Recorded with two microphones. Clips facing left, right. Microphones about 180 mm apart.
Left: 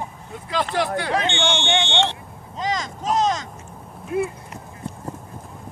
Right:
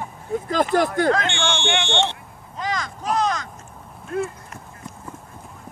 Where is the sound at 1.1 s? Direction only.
20° left (ahead or behind).